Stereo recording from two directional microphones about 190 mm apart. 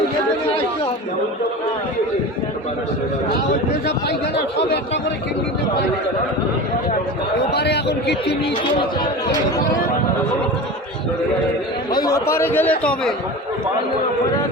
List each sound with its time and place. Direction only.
7.5 s a man's voice: 60° left (ahead or behind)
11.9 s a man's voice: 20° left (ahead or behind)